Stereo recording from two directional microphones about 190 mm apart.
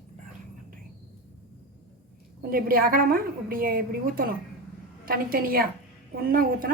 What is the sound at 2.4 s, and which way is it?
A woman's voice, 50° right (ahead or behind).